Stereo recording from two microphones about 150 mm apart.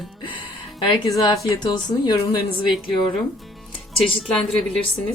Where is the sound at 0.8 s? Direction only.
30° left (ahead or behind).